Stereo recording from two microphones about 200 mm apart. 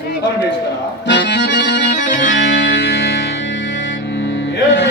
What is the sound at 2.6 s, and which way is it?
Music, 60° left (ahead or behind).